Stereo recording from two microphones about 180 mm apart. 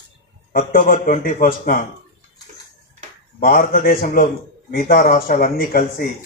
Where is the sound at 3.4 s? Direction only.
50° left (ahead or behind).